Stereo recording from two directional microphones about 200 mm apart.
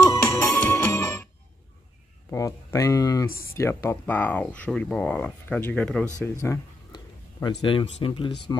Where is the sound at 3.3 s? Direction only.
45° left (ahead or behind).